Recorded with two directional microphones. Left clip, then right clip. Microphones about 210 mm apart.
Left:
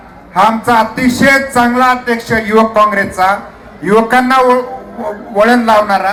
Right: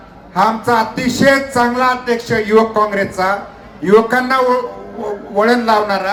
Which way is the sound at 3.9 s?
25° right (ahead or behind).